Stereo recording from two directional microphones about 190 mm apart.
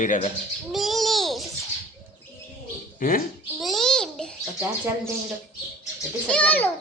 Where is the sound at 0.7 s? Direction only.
Centre (ahead or behind).